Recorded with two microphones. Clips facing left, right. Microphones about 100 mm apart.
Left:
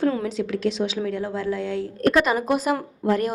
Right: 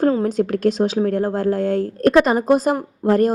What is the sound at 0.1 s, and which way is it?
A woman's voice, 40° right (ahead or behind).